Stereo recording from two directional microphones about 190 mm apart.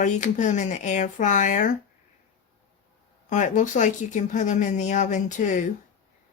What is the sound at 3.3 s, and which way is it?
Speech, 40° left (ahead or behind).